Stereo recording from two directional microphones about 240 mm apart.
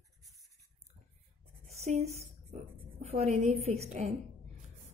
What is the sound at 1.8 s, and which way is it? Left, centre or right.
A woman's voice, right.